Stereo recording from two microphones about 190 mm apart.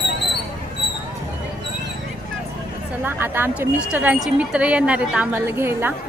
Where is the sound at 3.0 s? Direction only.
10° right (ahead or behind).